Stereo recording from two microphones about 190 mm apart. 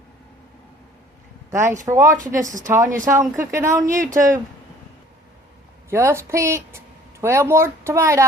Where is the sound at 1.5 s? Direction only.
15° right (ahead or behind).